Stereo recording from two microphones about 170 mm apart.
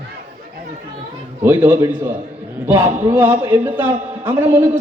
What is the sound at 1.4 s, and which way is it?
A man's voice, 10° right (ahead or behind).